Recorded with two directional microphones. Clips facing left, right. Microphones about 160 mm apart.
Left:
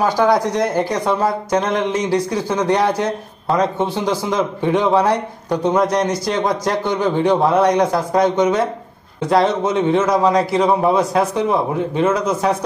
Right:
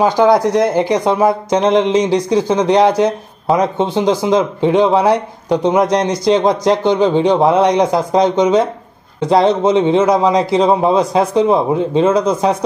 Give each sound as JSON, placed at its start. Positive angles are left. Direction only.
{"t": 0.2, "sound": "a man's voice", "side_deg": -15}